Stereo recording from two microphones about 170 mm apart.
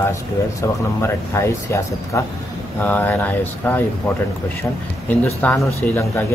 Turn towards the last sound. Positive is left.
turn(degrees=15)  # may be behind; listen again after turning